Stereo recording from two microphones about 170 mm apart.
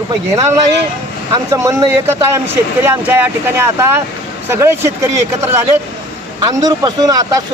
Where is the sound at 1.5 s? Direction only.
20° right (ahead or behind).